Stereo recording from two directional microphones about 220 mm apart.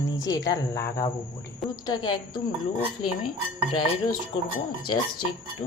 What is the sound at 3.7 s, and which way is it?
Speech, 20° left (ahead or behind).